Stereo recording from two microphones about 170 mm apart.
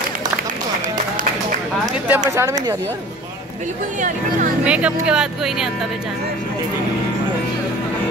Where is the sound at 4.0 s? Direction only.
50° right (ahead or behind).